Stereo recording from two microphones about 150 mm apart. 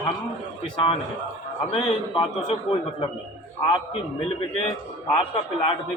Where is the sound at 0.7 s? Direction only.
35° left (ahead or behind).